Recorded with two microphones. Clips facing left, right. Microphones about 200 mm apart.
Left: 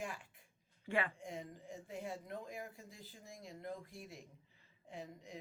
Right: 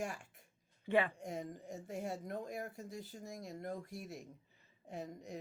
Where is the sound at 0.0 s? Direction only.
45° right (ahead or behind).